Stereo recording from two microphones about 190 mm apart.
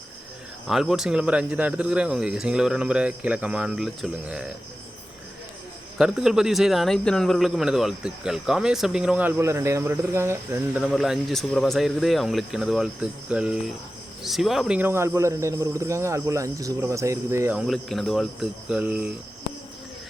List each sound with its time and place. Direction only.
0.7 s speech: centre (ahead or behind)
6.0 s speech: centre (ahead or behind)
10.8 s speech: centre (ahead or behind)